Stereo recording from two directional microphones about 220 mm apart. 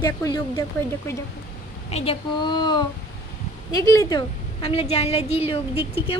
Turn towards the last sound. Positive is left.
turn(degrees=25)  # may be behind; listen again after turning